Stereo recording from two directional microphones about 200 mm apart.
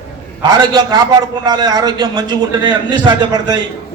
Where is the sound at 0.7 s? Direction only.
20° right (ahead or behind).